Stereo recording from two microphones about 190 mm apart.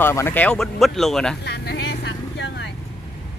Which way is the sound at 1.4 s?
60° left (ahead or behind).